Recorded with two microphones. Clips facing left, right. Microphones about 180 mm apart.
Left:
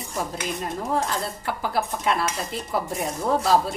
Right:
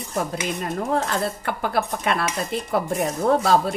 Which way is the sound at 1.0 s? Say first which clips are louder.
Right 3 dB; 60° right (ahead or behind).